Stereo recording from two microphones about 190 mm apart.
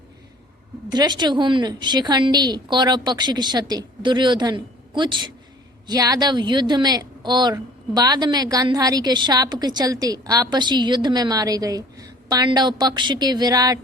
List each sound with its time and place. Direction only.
0.9 s a woman's voice: 20° right (ahead or behind)